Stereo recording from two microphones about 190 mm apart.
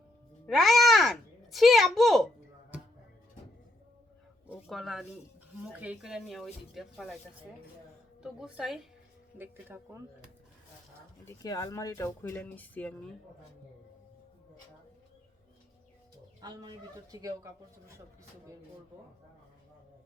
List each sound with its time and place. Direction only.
0.4 s a sound: centre (ahead or behind)
4.6 s speech: centre (ahead or behind)
8.2 s speech: 5° right (ahead or behind)
11.3 s speech: 20° left (ahead or behind)
16.4 s speech: 20° right (ahead or behind)